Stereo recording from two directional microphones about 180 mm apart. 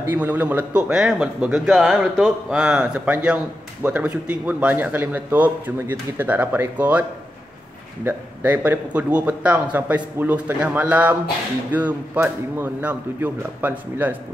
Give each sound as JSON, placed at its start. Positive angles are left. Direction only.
{"t": 0.0, "sound": "a man's voice", "side_deg": -10}